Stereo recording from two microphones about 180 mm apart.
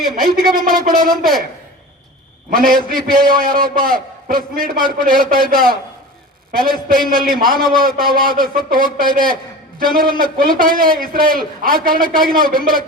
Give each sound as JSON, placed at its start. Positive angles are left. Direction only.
{"t": 0.2, "sound": "a man's voice", "side_deg": -55}
{"t": 2.5, "sound": "a man's voice", "side_deg": -50}